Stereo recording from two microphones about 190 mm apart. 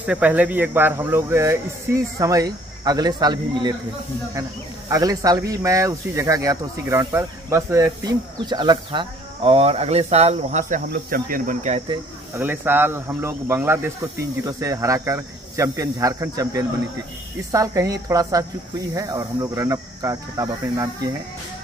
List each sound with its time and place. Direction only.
0.0 s speech: 5° right (ahead or behind); by 11.8 s 40° right (ahead or behind)
12.4 s speech: 10° right (ahead or behind)